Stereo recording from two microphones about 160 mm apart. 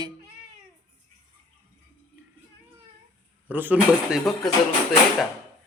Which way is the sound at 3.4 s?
10° right (ahead or behind).